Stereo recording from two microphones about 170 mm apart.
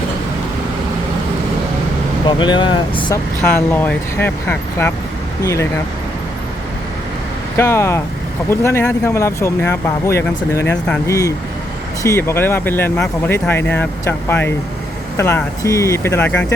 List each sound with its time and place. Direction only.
2.2 s speech: 25° left (ahead or behind)
3.4 s speech: 10° left (ahead or behind)
7.5 s speech: 15° left (ahead or behind)